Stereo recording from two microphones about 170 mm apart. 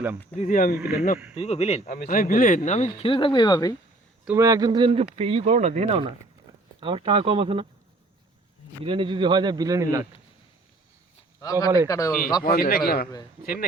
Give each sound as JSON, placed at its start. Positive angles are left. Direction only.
{"t": 0.3, "sound": "a man's voice", "side_deg": 50}
{"t": 1.4, "sound": "speech", "side_deg": 40}
{"t": 1.9, "sound": "a man's voice", "side_deg": 55}
{"t": 3.0, "sound": "speech", "side_deg": 30}
{"t": 4.4, "sound": "speech", "side_deg": -20}
{"t": 5.1, "sound": "speech", "side_deg": -35}
{"t": 8.8, "sound": "speech", "side_deg": -30}
{"t": 11.4, "sound": "speech", "side_deg": 20}
{"t": 12.4, "sound": "speech", "side_deg": 60}